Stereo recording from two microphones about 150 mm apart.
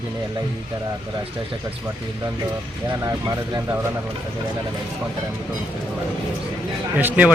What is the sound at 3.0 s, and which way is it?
Speech, 25° right (ahead or behind).